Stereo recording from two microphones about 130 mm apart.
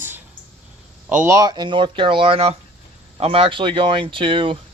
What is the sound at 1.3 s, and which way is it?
Speech, 30° right (ahead or behind).